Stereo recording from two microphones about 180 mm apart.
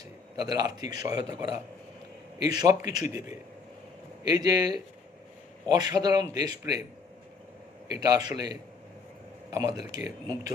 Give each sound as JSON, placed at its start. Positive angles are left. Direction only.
{"t": 0.3, "sound": "a man's voice", "side_deg": -20}
{"t": 4.2, "sound": "a man's voice", "side_deg": -20}
{"t": 7.9, "sound": "a man's voice", "side_deg": -20}